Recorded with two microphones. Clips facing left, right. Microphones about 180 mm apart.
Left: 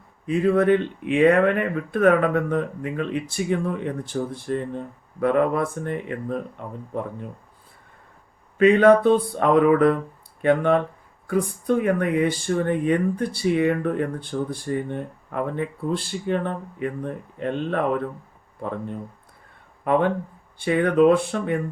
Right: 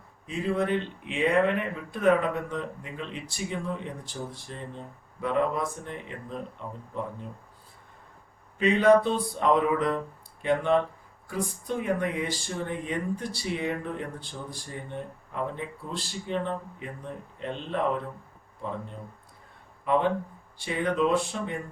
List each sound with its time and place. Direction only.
0.3 s speech: 55° left (ahead or behind)
8.5 s speech: 55° left (ahead or behind)
19.8 s speech: 55° left (ahead or behind)